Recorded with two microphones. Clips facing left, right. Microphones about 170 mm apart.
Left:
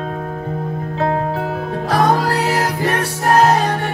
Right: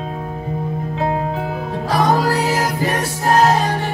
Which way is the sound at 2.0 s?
Centre (ahead or behind).